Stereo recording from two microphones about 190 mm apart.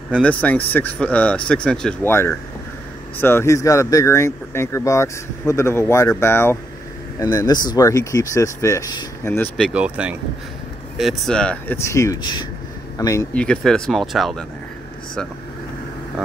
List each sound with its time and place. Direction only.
0.1 s speech: 5° left (ahead or behind)
9.8 s speech: 5° right (ahead or behind); by 13.3 s 20° left (ahead or behind)
13.3 s speech: 5° left (ahead or behind)